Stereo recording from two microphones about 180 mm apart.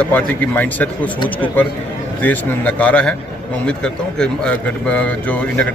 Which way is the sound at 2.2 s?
10° left (ahead or behind).